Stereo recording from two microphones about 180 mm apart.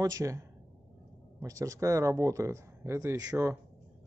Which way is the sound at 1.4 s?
20° right (ahead or behind).